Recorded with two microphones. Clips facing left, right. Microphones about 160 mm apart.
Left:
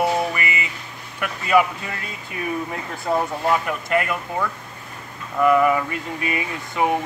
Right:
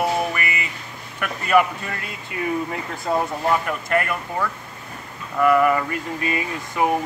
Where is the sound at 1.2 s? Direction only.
5° left (ahead or behind).